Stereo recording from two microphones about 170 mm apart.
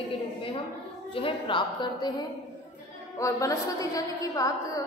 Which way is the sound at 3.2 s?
20° left (ahead or behind).